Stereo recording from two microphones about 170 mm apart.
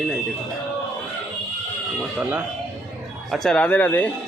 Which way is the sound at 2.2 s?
10° right (ahead or behind).